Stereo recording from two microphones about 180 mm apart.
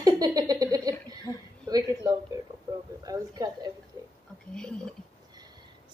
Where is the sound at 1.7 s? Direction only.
20° right (ahead or behind).